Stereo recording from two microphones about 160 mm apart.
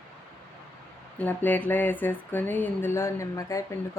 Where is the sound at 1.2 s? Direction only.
10° left (ahead or behind).